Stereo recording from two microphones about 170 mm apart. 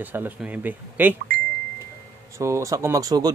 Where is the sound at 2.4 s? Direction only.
15° right (ahead or behind).